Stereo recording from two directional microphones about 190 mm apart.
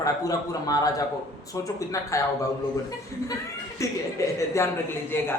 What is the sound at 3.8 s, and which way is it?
Speech, 15° left (ahead or behind).